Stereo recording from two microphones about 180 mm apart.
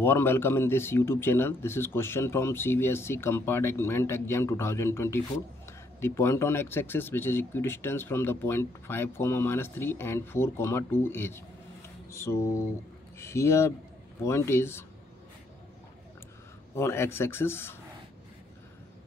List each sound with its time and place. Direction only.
0.0 s speech: 15° left (ahead or behind)
16.7 s speech: 15° left (ahead or behind)